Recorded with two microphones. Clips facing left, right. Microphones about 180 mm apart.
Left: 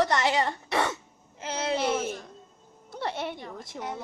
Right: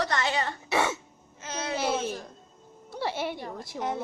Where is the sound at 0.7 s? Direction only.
5° right (ahead or behind).